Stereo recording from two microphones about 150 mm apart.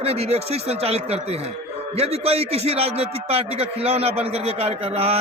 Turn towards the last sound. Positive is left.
turn(degrees=-40)  # may be behind; listen again after turning